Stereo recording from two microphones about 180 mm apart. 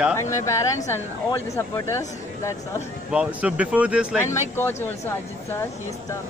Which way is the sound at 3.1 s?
5° right (ahead or behind).